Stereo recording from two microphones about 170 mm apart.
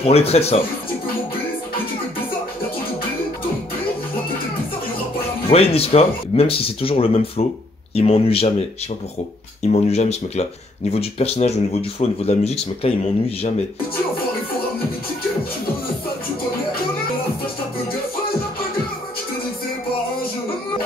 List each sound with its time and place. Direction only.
0.0 s speech: 35° left (ahead or behind)
5.5 s speech: 35° left (ahead or behind)